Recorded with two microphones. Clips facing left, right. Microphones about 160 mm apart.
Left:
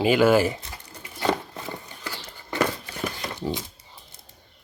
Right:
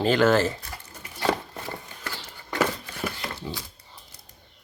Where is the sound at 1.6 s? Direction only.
15° left (ahead or behind).